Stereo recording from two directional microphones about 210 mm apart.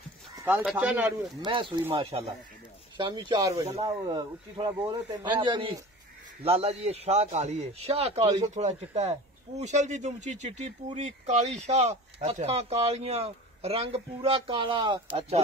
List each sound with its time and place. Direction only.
0.4 s clip-clop: 10° right (ahead or behind)
0.7 s speech: 10° right (ahead or behind)
1.4 s speech: 25° right (ahead or behind)